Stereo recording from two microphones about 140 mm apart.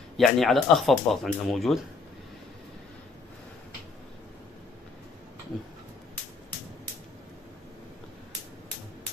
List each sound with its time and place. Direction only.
0.2 s speech: centre (ahead or behind)